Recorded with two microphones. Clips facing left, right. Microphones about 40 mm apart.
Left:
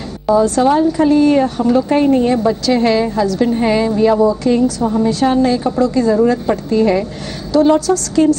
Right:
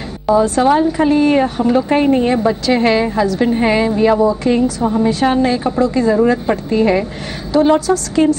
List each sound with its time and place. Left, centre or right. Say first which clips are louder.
0.3 s a woman's voice: even; centre